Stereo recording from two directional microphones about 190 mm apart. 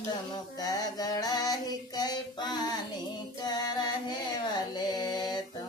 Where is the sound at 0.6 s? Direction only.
20° left (ahead or behind).